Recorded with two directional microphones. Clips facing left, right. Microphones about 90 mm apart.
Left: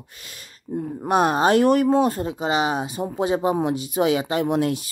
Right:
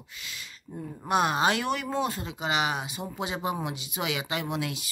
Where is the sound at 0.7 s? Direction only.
65° left (ahead or behind).